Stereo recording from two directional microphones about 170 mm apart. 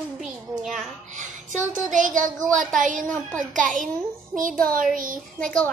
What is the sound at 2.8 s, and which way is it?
A child's voice, 50° right (ahead or behind).